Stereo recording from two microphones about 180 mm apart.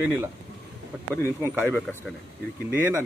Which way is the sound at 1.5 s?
Centre (ahead or behind).